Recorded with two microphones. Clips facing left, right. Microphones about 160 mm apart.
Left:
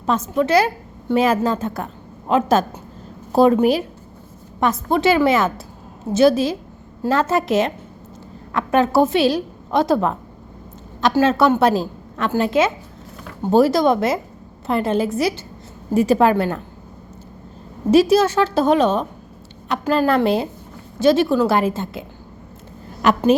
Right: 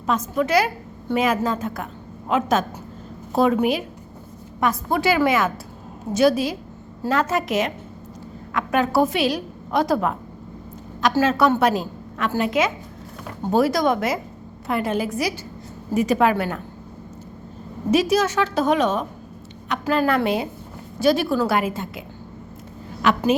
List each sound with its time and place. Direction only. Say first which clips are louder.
0.0 s a woman's voice: left 3 dB; 30° left (ahead or behind)
4.6 s a woman's voice: left 4 dB; 25° left (ahead or behind)
11.2 s a woman's voice: left 3 dB; 25° left (ahead or behind)
17.9 s a woman's voice: left 5 dB; 30° left (ahead or behind)
23.0 s a woman's voice: left 3 dB; 40° left (ahead or behind)